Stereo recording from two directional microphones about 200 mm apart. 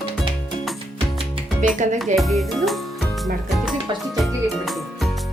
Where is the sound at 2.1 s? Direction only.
Centre (ahead or behind).